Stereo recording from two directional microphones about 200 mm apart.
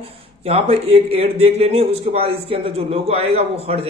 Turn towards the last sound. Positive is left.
turn(degrees=-30)  # may be behind; listen again after turning